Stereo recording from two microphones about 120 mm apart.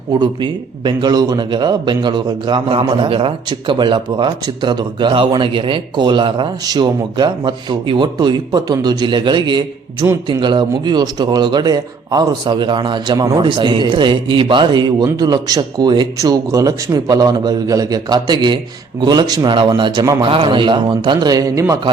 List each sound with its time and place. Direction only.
0.1 s a man's voice: 40° right (ahead or behind)
20.2 s a man's voice: 50° right (ahead or behind); by 21.8 s 25° right (ahead or behind)